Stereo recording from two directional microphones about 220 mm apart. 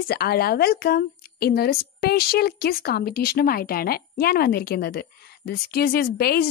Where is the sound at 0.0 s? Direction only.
45° left (ahead or behind).